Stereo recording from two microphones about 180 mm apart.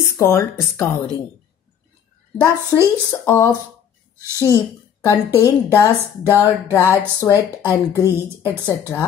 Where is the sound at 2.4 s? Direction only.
15° left (ahead or behind).